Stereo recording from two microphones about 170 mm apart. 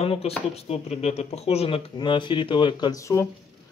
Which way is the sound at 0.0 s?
35° left (ahead or behind).